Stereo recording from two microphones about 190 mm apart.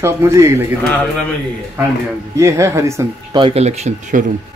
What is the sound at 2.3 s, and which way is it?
Speech, 15° right (ahead or behind).